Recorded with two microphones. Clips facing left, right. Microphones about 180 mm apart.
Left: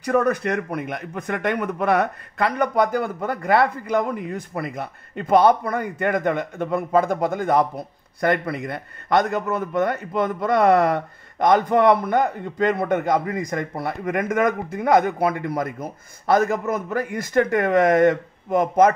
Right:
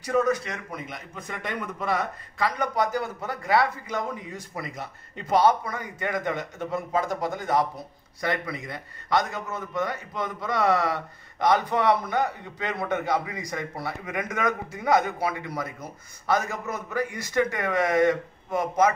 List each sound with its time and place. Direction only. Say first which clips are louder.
0.0 s a man's voice: left 4 dB; 60° left (ahead or behind)